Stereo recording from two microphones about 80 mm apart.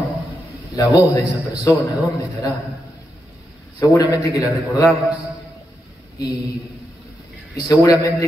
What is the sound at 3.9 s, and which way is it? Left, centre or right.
A man's voice, left.